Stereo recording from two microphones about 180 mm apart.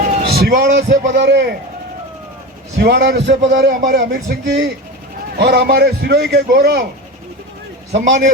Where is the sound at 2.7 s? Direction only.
65° right (ahead or behind).